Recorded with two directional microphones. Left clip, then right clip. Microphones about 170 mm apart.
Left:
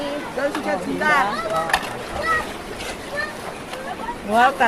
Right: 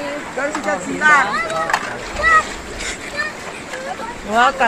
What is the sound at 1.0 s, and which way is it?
Speech, 5° left (ahead or behind).